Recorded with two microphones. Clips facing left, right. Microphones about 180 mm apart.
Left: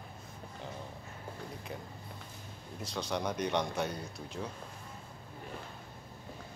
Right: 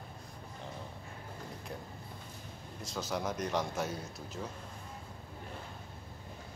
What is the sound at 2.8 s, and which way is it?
A man's voice, centre (ahead or behind).